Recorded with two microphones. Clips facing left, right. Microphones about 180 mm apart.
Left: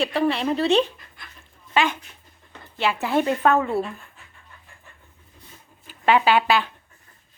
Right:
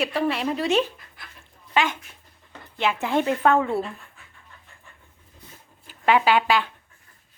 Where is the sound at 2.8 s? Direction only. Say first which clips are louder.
Left 1 dB; 10° left (ahead or behind).